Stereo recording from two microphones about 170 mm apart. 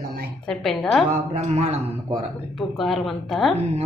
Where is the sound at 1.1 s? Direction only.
40° right (ahead or behind).